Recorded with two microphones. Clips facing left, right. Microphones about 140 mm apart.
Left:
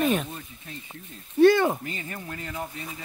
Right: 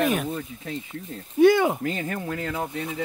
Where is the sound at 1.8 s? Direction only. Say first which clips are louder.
Right 8 dB; 85° right.